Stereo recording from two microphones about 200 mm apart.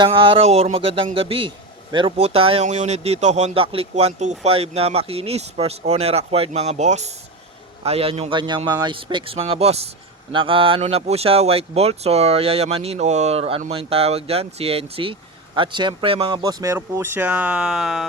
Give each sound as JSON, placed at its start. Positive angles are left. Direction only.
{"t": 0.0, "sound": "speech", "side_deg": -25}